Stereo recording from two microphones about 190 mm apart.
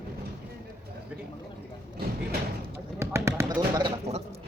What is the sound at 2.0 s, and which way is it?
Speech, 55° right (ahead or behind).